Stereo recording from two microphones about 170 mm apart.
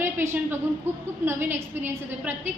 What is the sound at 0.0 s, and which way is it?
A woman's voice, 15° right (ahead or behind).